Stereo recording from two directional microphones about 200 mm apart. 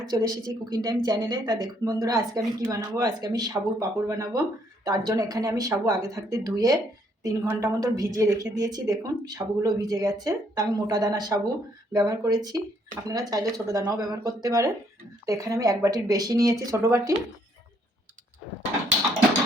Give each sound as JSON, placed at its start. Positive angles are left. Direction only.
{"t": 0.0, "sound": "speech", "side_deg": -20}